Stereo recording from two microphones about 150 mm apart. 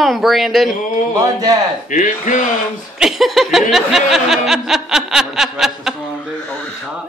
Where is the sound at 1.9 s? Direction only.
55° left (ahead or behind).